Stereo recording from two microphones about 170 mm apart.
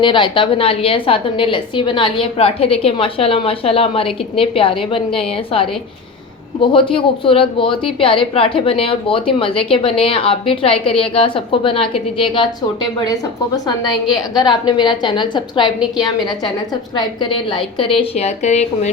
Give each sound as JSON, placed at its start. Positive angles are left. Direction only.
{"t": 0.0, "sound": "a woman's voice", "side_deg": 30}
{"t": 14.3, "sound": "a woman's voice", "side_deg": 25}